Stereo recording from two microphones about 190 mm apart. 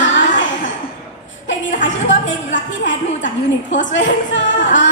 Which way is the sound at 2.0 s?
75° left (ahead or behind).